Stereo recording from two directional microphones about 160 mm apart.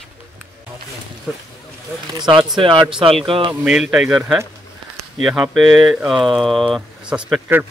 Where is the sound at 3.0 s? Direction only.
35° right (ahead or behind).